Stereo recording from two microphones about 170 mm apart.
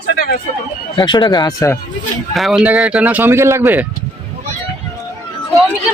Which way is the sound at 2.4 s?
Centre (ahead or behind).